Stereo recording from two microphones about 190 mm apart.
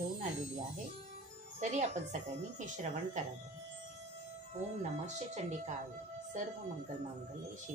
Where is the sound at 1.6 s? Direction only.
40° right (ahead or behind).